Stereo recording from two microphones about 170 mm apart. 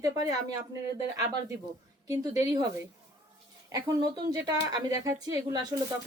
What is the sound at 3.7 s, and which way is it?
Speech, 25° right (ahead or behind).